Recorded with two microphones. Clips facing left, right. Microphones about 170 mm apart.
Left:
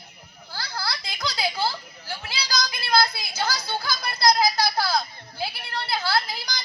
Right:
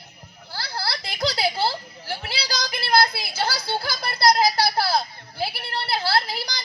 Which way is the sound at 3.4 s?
30° right (ahead or behind).